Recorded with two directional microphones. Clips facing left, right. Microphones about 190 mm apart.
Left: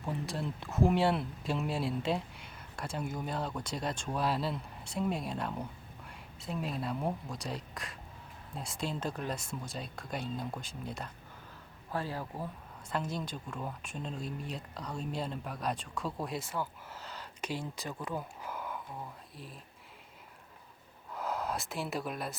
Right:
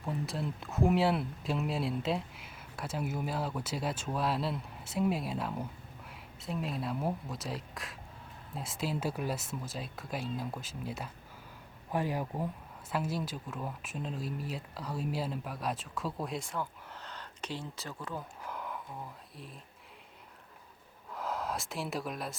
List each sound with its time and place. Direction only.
0.0 s speech: centre (ahead or behind)
11.9 s speech: 15° right (ahead or behind); by 18.8 s centre (ahead or behind)
21.1 s gasp: centre (ahead or behind)